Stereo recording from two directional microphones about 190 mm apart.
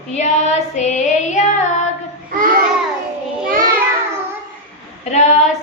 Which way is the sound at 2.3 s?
50° right (ahead or behind).